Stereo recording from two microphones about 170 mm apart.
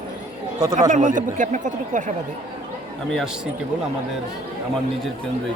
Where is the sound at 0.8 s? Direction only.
45° right (ahead or behind).